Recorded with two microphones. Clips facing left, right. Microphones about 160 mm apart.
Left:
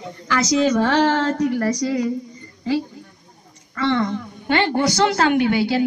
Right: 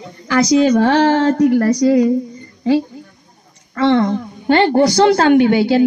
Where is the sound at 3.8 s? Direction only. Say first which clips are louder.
Right 7 dB; 60° right (ahead or behind).